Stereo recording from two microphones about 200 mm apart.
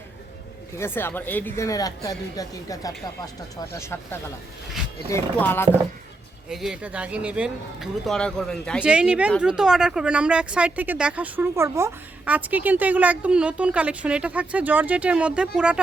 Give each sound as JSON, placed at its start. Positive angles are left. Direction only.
{"t": 0.8, "sound": "speech", "side_deg": 10}
{"t": 6.5, "sound": "speech", "side_deg": 0}